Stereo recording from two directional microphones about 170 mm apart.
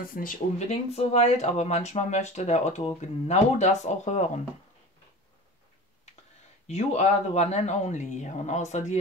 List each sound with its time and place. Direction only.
0.1 s speech: 55° left (ahead or behind)
0.7 s speech: 40° left (ahead or behind)
6.7 s speech: 40° left (ahead or behind)